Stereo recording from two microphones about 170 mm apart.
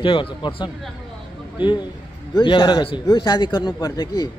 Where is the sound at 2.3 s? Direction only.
30° left (ahead or behind).